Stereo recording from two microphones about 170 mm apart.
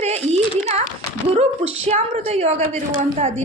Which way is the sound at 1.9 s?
40° right (ahead or behind).